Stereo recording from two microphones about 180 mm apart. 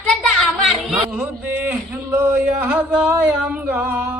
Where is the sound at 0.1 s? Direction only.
Centre (ahead or behind).